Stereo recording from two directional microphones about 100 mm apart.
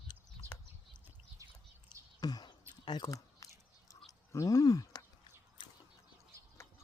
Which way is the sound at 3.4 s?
35° left (ahead or behind).